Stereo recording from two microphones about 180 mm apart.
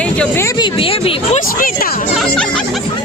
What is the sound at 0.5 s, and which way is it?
Speech, 25° left (ahead or behind).